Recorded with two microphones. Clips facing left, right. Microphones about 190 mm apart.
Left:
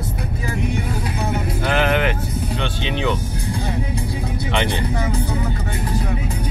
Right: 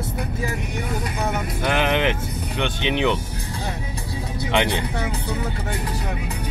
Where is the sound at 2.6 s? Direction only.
15° right (ahead or behind).